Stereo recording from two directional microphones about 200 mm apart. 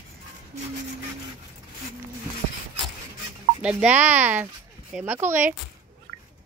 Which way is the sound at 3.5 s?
5° right (ahead or behind).